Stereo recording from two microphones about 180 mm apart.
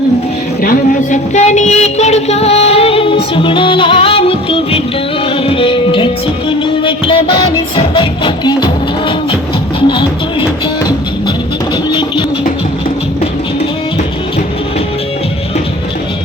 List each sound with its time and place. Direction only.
0.6 s a woman's voice: 45° left (ahead or behind); by 3.2 s 30° left (ahead or behind)
3.3 s music: 30° left (ahead or behind)
11.9 s music: 25° left (ahead or behind)